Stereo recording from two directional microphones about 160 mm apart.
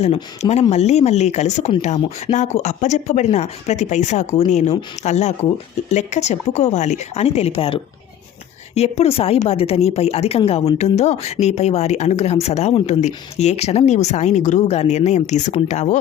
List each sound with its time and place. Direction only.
0.0 s a woman's voice: 40° left (ahead or behind)